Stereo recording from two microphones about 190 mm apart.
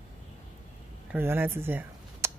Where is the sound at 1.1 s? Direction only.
10° right (ahead or behind).